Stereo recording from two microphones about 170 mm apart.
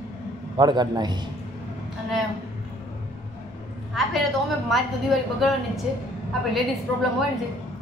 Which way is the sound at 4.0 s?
Centre (ahead or behind).